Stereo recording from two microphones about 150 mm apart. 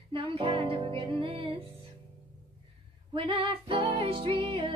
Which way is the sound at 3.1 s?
35° right (ahead or behind).